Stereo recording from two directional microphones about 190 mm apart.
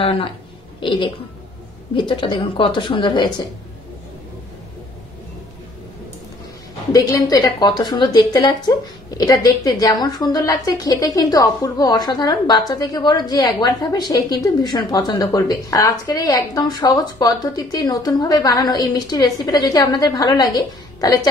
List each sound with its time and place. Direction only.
0.0 s a woman's voice: 30° left (ahead or behind)
6.9 s a woman's voice: 20° left (ahead or behind)